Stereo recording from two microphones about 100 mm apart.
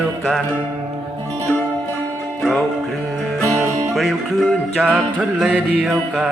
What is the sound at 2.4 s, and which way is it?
Music, 5° left (ahead or behind).